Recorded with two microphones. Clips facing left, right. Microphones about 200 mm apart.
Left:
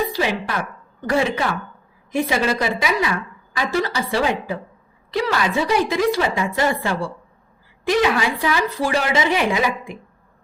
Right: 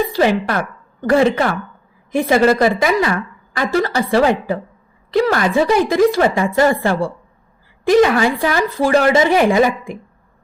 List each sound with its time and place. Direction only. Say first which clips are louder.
0.2 s a woman's voice: right 7 dB; 55° right (ahead or behind)